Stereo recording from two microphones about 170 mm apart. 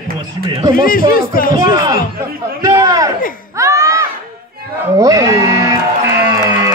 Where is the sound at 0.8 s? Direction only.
55° left (ahead or behind).